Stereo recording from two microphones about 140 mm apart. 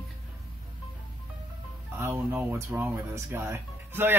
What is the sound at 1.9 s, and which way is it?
Speech, 15° right (ahead or behind).